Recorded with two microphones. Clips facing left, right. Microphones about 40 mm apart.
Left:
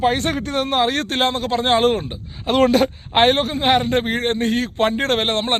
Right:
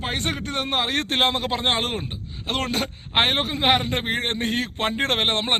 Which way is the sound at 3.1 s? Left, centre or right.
Centre.